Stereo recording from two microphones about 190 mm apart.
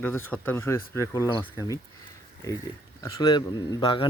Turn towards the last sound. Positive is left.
turn(degrees=25)  # may be behind; listen again after turning